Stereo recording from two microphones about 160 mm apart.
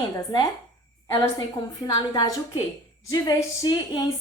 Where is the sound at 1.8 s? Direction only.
20° left (ahead or behind).